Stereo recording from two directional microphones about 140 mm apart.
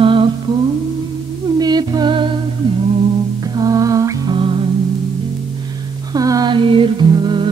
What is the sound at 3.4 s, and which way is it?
Music, 25° right (ahead or behind).